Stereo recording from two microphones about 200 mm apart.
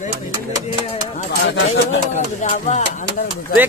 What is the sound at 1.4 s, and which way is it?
Speech, 60° left (ahead or behind).